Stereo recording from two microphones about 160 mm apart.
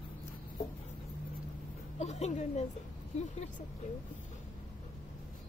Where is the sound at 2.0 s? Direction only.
45° left (ahead or behind).